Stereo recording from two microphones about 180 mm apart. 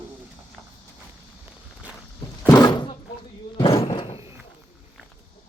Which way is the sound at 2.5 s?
20° left (ahead or behind).